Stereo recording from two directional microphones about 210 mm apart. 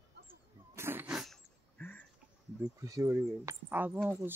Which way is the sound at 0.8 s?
10° right (ahead or behind).